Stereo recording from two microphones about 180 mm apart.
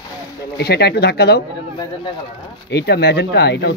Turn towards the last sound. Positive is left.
turn(degrees=65)  # may be behind; listen again after turning